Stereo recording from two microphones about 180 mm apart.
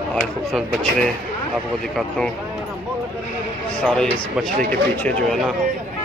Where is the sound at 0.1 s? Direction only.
Centre (ahead or behind).